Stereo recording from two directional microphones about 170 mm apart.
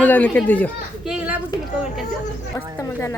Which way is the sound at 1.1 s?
5° right (ahead or behind).